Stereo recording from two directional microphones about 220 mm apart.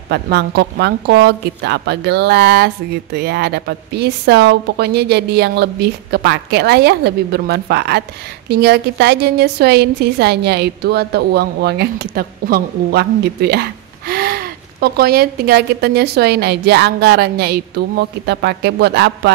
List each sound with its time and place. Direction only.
0.1 s a woman's voice: 50° right (ahead or behind)